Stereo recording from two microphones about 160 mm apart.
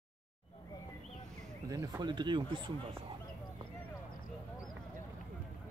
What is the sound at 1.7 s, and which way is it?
Speech, 25° right (ahead or behind).